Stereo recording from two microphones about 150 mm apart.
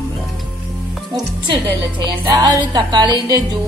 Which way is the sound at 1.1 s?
35° right (ahead or behind).